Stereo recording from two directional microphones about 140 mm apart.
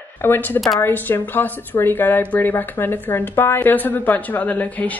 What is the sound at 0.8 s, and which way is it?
Speech, 15° left (ahead or behind).